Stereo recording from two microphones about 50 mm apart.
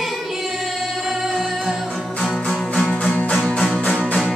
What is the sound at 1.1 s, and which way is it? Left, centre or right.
Music, centre.